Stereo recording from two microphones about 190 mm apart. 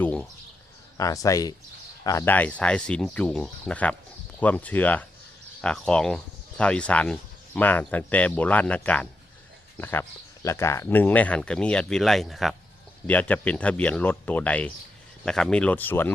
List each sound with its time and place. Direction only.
0.0 s bird: 5° left (ahead or behind)
0.9 s speech: 15° left (ahead or behind)